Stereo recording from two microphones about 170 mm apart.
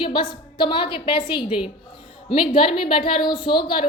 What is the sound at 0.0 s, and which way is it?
A woman's voice, 30° left (ahead or behind).